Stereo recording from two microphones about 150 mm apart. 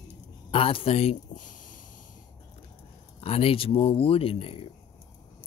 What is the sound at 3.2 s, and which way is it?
Speech, 40° left (ahead or behind).